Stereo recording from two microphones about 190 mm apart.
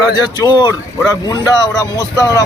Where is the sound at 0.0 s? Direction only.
20° left (ahead or behind).